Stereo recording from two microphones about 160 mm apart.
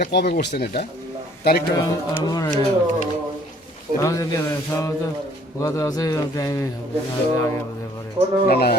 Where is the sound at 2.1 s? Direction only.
25° left (ahead or behind).